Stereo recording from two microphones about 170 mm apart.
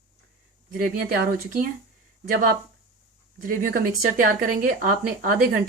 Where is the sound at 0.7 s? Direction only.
60° right (ahead or behind).